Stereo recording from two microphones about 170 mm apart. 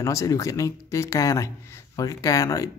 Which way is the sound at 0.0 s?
20° left (ahead or behind).